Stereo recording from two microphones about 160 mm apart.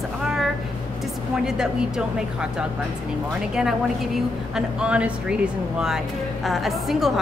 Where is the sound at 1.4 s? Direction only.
5° right (ahead or behind).